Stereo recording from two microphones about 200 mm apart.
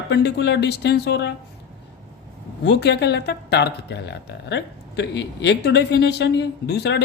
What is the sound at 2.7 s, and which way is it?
Speech, 60° left (ahead or behind).